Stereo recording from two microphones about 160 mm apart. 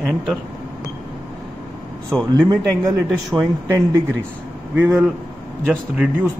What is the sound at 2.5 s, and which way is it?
Speech, 20° right (ahead or behind).